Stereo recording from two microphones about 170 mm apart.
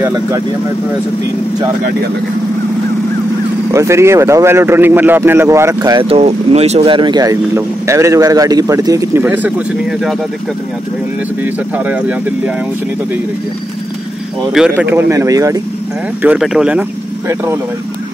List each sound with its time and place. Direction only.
0.0 s a man's voice: 20° right (ahead or behind)
3.7 s a man's voice: 15° right (ahead or behind)
6.0 s speech: 40° right (ahead or behind); by 9.5 s 10° right (ahead or behind)
11.4 s a man's voice: 10° right (ahead or behind)
14.5 s a man's voice: 5° right (ahead or behind)
16.2 s a man's voice: 5° right (ahead or behind)